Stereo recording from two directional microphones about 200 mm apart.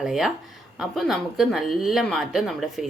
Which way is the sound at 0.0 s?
Centre (ahead or behind).